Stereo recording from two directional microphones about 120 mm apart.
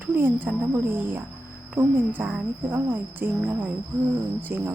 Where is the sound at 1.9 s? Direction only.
10° right (ahead or behind).